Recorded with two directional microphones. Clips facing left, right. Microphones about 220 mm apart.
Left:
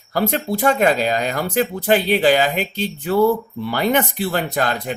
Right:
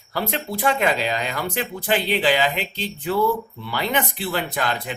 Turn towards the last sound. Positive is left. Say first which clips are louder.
# left 4 dB
turn(degrees=40)  # may be behind; listen again after turning